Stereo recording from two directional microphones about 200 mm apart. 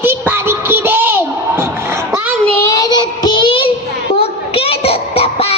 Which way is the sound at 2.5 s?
15° left (ahead or behind).